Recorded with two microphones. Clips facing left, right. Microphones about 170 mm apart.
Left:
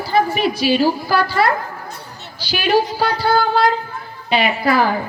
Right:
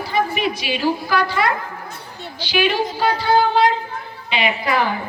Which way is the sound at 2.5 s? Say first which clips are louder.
Left 3 dB; 40° left (ahead or behind).